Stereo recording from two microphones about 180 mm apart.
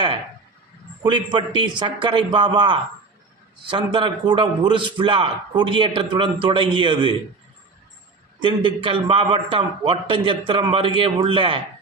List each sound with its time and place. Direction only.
1.0 s a man's voice: 25° right (ahead or behind)
8.4 s a man's voice: 25° right (ahead or behind)